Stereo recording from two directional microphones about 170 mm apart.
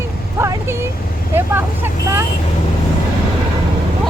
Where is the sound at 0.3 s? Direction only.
15° right (ahead or behind).